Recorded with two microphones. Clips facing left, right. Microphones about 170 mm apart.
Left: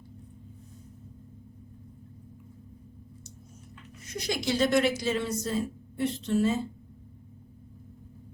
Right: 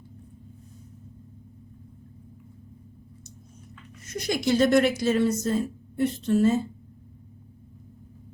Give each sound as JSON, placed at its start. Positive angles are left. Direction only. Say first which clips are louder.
{"t": 4.1, "sound": "a woman's voice", "louder": "right 5 dB", "side_deg": -50}